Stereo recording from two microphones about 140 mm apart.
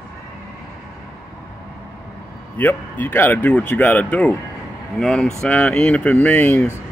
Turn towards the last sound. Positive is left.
turn(degrees=10)  # may be behind; listen again after turning